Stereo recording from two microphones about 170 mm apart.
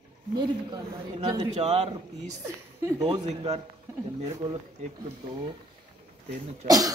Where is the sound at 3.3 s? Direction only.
40° right (ahead or behind).